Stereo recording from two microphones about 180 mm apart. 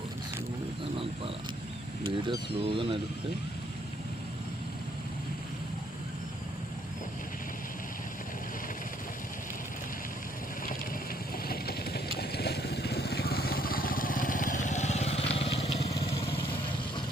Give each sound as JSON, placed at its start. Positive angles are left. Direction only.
{"t": 2.0, "sound": "speech", "side_deg": -25}
{"t": 11.4, "sound": "vehicle", "side_deg": 60}